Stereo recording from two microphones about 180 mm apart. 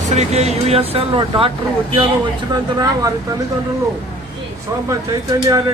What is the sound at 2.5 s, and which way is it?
Speech, 20° right (ahead or behind).